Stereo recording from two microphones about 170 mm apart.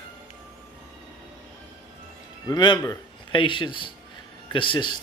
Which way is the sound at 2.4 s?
25° left (ahead or behind).